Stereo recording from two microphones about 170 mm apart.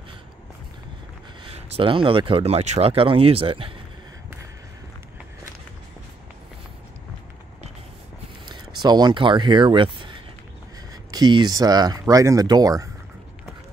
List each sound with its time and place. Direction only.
1.5 s speech: 35° right (ahead or behind)
8.5 s speech: 25° right (ahead or behind)